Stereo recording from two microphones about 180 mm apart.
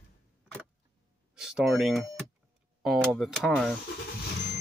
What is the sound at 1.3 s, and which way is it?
Speech, 5° right (ahead or behind).